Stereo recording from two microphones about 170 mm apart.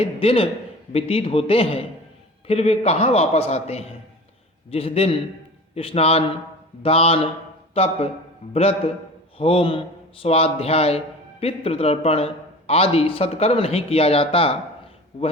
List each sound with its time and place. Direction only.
0.0 s a man's voice: 35° left (ahead or behind)